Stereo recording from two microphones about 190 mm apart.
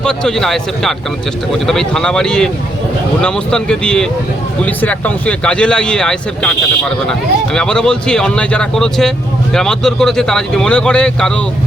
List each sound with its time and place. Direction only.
0.0 s speech: 5° left (ahead or behind)